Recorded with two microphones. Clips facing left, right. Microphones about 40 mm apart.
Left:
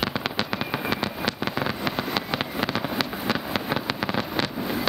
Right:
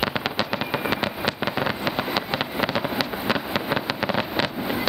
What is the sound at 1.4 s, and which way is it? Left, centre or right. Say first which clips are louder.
Vehicle: right 3 dB; centre.